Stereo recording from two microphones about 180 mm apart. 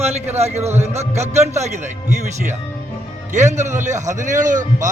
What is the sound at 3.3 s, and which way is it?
A man's voice, 40° right (ahead or behind).